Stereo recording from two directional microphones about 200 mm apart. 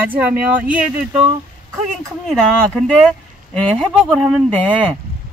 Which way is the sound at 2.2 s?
Centre (ahead or behind).